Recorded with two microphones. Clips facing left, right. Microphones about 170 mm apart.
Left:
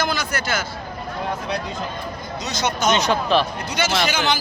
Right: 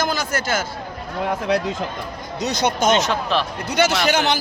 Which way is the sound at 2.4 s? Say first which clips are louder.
Right 3 dB; 55° right (ahead or behind).